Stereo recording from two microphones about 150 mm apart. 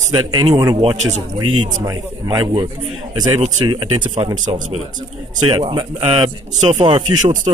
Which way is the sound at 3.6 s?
35° right (ahead or behind).